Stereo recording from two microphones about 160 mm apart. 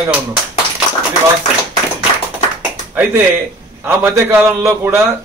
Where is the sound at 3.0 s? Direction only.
10° right (ahead or behind).